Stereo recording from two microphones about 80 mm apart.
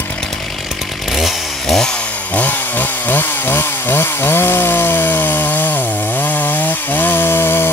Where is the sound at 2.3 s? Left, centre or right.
Left.